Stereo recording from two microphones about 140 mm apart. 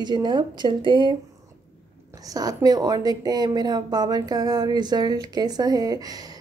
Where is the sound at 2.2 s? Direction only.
25° right (ahead or behind).